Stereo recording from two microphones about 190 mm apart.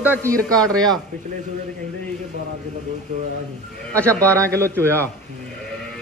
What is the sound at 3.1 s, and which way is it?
Speech, 40° right (ahead or behind).